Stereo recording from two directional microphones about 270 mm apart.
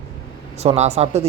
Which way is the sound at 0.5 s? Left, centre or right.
Right.